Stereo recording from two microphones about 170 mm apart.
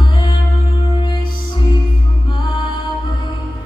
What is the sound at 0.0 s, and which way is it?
Music, 25° left (ahead or behind).